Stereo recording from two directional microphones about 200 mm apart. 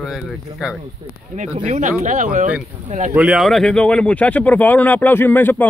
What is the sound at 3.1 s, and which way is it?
Speech, 5° right (ahead or behind).